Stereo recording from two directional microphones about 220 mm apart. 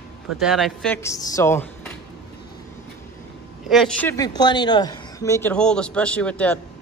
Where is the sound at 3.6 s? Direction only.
Centre (ahead or behind).